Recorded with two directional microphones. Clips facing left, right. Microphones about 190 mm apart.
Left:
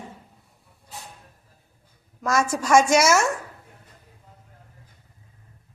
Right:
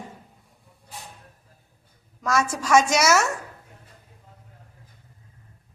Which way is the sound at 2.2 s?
10° left (ahead or behind).